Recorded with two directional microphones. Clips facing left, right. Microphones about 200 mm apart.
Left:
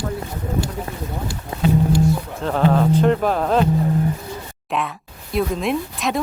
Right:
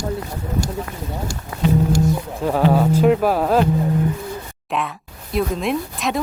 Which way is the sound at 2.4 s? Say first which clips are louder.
Right 1 dB; 10° right (ahead or behind).